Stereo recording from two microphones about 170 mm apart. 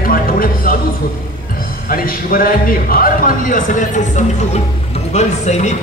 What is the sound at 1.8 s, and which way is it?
A man's voice, 55° left (ahead or behind).